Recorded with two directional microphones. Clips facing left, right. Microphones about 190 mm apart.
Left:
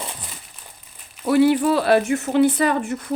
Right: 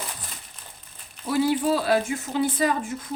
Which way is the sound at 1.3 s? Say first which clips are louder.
Left 6 dB; 65° left (ahead or behind).